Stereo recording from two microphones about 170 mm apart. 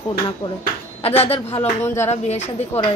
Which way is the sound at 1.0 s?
35° left (ahead or behind).